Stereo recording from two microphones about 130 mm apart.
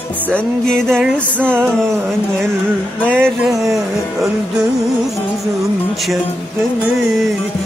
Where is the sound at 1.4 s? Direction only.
15° right (ahead or behind).